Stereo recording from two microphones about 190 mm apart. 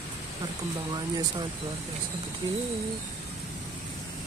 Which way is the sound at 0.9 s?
20° right (ahead or behind).